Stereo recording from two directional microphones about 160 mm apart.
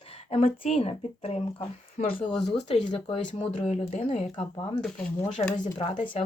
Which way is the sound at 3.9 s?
60° left (ahead or behind).